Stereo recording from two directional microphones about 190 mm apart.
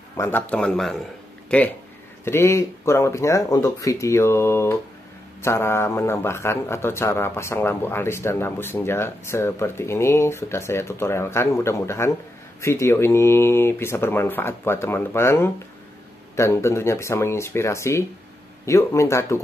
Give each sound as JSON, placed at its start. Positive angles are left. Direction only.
{"t": 0.1, "sound": "speech", "side_deg": 10}
{"t": 2.2, "sound": "speech", "side_deg": 15}